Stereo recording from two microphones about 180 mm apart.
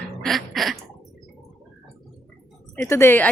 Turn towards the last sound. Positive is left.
turn(degrees=10)  # may be behind; listen again after turning